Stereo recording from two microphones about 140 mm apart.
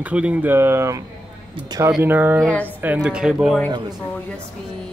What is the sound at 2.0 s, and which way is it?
Speech, 15° right (ahead or behind).